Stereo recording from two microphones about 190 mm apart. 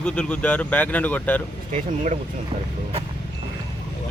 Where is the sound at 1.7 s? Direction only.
40° right (ahead or behind).